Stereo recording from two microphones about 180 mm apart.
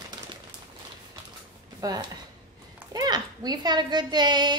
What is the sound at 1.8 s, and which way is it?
A woman's voice, 20° right (ahead or behind).